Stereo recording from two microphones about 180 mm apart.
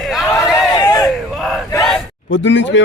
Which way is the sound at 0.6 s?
20° left (ahead or behind).